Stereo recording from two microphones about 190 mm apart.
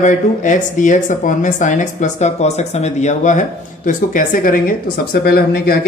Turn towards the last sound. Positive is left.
turn(degrees=55)  # may be behind; listen again after turning